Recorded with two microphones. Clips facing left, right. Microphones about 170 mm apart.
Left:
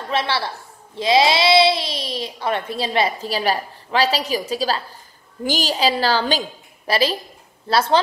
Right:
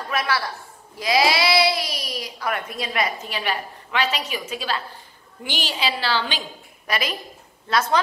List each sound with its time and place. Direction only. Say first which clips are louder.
0.1 s a woman's voice: left 3 dB; 30° left (ahead or behind)